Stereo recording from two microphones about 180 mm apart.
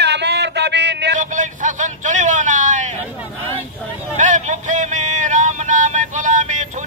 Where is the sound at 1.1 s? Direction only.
45° right (ahead or behind).